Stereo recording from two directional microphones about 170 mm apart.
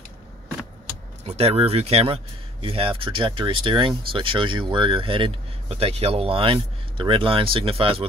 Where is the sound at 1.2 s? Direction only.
35° right (ahead or behind).